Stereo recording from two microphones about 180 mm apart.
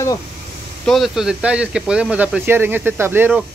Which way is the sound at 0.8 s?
Centre (ahead or behind).